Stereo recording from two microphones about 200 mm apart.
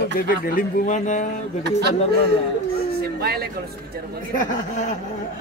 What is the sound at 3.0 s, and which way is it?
Speech, 50° right (ahead or behind).